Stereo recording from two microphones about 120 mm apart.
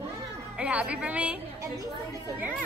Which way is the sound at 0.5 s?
10° right (ahead or behind).